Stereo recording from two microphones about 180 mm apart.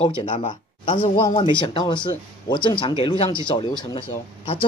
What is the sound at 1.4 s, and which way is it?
Speech, 25° left (ahead or behind).